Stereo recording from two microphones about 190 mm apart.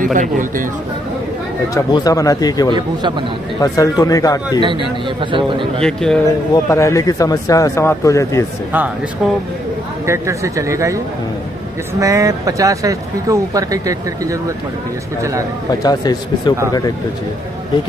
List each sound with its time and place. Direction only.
0.0 s a man's voice: 45° right (ahead or behind)
1.7 s speech: 20° left (ahead or behind)
2.7 s speech: 25° right (ahead or behind)
3.6 s speech: 20° left (ahead or behind)
4.6 s speech: 25° right (ahead or behind)
5.8 s speech: 5° left (ahead or behind)
6.5 s speech: 15° left (ahead or behind)
10.0 s speech: 15° right (ahead or behind)
12.0 s speech: 15° right (ahead or behind)
15.8 s speech: 20° left (ahead or behind)